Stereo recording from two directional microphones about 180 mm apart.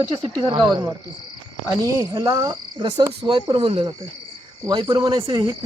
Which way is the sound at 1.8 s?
15° right (ahead or behind).